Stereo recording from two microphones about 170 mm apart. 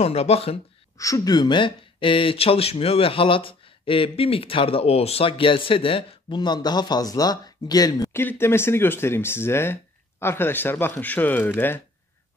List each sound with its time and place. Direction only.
0.0 s speech: 35° left (ahead or behind)
0.9 s speech: 20° left (ahead or behind)